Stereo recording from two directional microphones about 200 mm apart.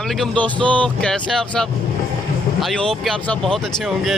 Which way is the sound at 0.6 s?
25° right (ahead or behind).